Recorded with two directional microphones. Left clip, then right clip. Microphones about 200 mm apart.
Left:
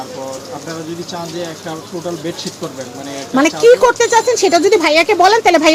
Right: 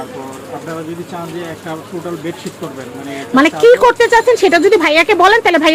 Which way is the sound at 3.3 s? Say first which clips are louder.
Right 1 dB; 15° right (ahead or behind).